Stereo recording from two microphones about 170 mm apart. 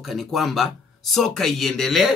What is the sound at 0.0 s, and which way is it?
Speech, centre (ahead or behind).